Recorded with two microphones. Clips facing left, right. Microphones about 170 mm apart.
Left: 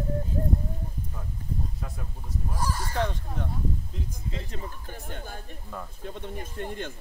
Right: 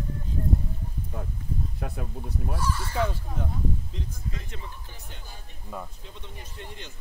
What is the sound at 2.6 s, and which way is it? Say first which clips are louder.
Speech: left 2 dB; 40° left (ahead or behind).